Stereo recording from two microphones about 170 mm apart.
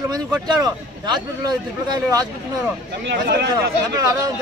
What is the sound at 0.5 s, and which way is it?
A man's voice, 25° right (ahead or behind).